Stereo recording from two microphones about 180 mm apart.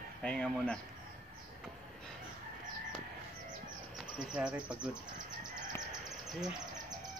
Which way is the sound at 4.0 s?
5° right (ahead or behind).